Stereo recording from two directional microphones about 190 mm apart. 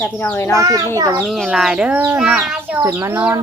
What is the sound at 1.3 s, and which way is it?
Speech, centre (ahead or behind).